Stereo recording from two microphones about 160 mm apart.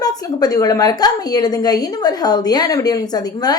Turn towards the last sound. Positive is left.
turn(degrees=25)  # may be behind; listen again after turning